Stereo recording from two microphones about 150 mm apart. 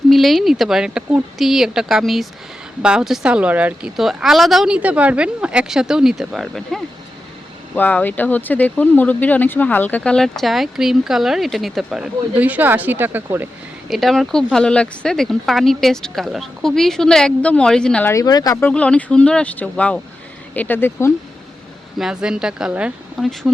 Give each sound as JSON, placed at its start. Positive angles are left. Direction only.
{"t": 0.1, "sound": "speech", "side_deg": 0}
{"t": 13.9, "sound": "speech", "side_deg": 0}
{"t": 18.1, "sound": "speech", "side_deg": 25}
{"t": 18.6, "sound": "speech", "side_deg": 5}
{"t": 21.9, "sound": "speech", "side_deg": -5}